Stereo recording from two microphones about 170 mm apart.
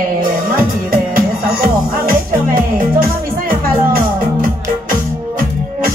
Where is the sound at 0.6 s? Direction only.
55° right (ahead or behind).